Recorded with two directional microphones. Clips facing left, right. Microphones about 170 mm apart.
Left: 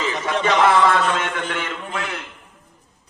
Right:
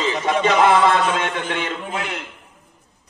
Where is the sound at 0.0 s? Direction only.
20° right (ahead or behind).